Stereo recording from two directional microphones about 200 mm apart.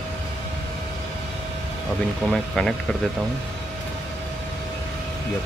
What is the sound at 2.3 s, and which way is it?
Speech, centre (ahead or behind).